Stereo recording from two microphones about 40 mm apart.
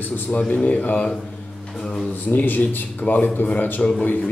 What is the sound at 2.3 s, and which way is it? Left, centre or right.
Speech, left.